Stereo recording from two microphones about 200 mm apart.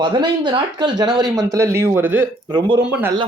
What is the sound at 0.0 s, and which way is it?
Speech, 25° right (ahead or behind).